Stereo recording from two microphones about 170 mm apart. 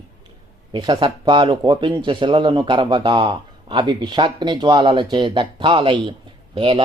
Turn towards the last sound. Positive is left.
turn(degrees=-30)  # may be behind; listen again after turning